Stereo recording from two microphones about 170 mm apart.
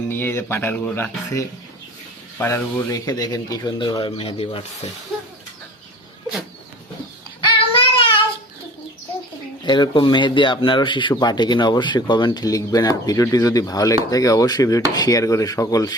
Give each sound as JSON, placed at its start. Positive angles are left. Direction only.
{"t": 0.1, "sound": "speech", "side_deg": 15}
{"t": 7.4, "sound": "child singing", "side_deg": 30}
{"t": 9.6, "sound": "speech", "side_deg": 25}